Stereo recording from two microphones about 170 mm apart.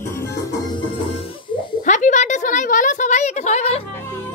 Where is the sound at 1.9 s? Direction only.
45° left (ahead or behind).